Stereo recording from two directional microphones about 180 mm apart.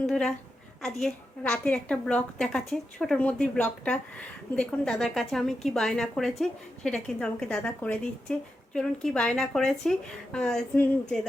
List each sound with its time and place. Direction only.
0.1 s a woman's voice: 5° left (ahead or behind)